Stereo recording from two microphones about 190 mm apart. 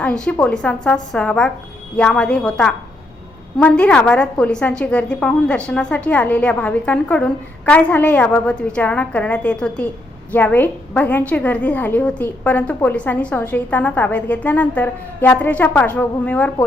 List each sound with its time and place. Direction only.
0.0 s a woman's voice: 5° left (ahead or behind)